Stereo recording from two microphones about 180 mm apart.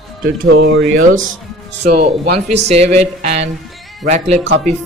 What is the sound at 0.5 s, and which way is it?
Speech, 90° right.